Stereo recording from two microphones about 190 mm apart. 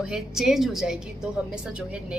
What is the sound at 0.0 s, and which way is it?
A woman's voice, 5° right (ahead or behind).